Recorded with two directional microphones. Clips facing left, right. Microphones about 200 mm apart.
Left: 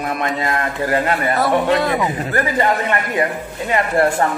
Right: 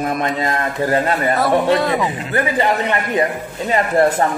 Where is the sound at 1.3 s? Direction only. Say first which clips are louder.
Right 1 dB; centre (ahead or behind).